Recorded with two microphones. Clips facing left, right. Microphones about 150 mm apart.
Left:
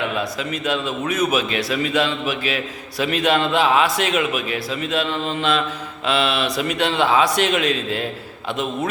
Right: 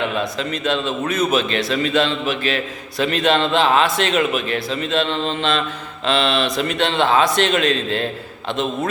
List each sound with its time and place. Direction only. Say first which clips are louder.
0.2 s a man's voice: right 2 dB; 10° left (ahead or behind)